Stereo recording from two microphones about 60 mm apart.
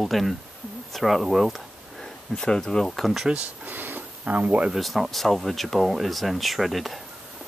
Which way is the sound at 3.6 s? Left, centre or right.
Right.